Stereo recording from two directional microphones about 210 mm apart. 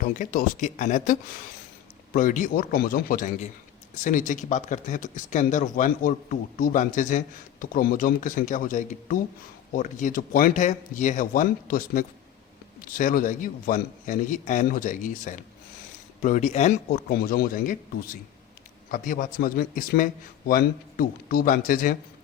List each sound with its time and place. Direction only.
0.0 s speech: 40° left (ahead or behind)